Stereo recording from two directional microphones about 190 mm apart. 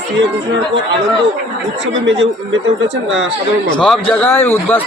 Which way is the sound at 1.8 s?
75° right (ahead or behind).